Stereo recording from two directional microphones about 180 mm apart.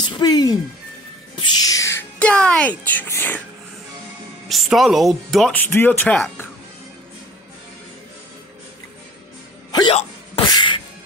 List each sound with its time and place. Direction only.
0.1 s speech: 20° left (ahead or behind)
4.5 s speech: centre (ahead or behind)
9.7 s music: 20° left (ahead or behind)